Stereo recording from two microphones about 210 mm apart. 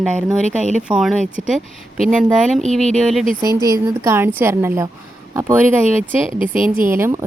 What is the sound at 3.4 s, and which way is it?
A woman's voice, 15° right (ahead or behind).